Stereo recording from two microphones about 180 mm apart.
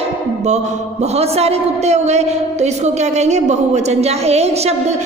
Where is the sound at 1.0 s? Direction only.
35° right (ahead or behind).